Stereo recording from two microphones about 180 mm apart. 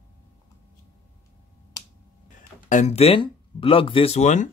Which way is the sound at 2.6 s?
40° left (ahead or behind).